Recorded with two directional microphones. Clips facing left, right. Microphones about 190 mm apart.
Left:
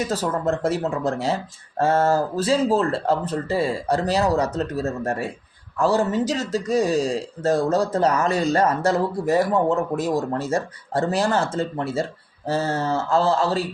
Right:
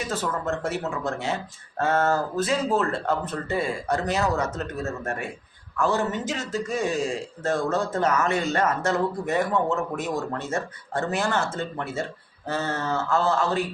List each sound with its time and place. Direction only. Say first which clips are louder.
0.1 s a man's voice: left 5 dB; 35° left (ahead or behind)